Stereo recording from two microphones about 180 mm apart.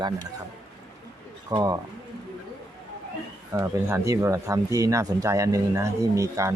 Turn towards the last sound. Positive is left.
turn(degrees=-15)  # may be behind; listen again after turning